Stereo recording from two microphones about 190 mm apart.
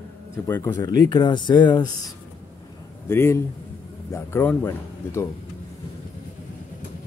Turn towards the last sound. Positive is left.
turn(degrees=10)  # may be behind; listen again after turning